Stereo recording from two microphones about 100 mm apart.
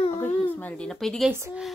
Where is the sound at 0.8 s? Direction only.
5° left (ahead or behind).